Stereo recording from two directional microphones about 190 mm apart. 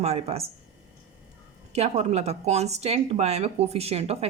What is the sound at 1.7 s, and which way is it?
Speech, 35° right (ahead or behind).